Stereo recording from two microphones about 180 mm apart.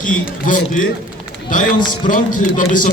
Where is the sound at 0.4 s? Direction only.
45° left (ahead or behind).